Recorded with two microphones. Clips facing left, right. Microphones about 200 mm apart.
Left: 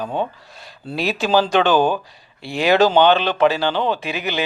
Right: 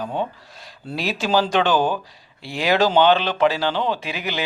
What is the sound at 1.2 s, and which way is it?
Speech, 65° left (ahead or behind).